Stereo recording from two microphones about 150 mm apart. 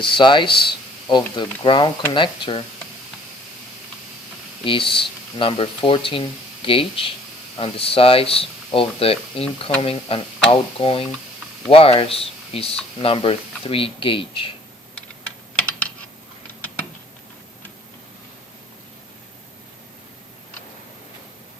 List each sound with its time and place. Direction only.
0.0 s speech: 35° left (ahead or behind)
4.6 s speech: 35° left (ahead or behind)